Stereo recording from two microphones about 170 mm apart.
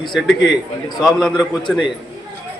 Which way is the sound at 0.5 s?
25° left (ahead or behind).